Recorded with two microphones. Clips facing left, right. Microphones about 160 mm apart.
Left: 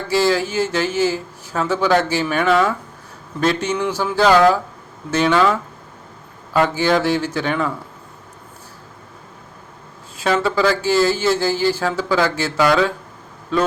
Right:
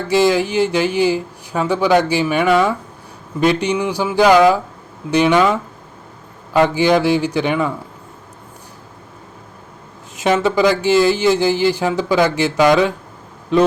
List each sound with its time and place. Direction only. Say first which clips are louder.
0.1 s speech: right 3 dB; 15° right (ahead or behind)
6.5 s speech: right 3 dB; 15° right (ahead or behind)
10.2 s speech: right 3 dB; 20° right (ahead or behind)